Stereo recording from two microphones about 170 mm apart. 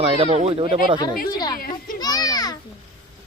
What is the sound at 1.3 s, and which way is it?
Speech, 25° left (ahead or behind).